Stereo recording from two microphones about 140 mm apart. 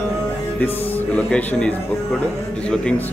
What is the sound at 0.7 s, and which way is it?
Speech, 15° left (ahead or behind).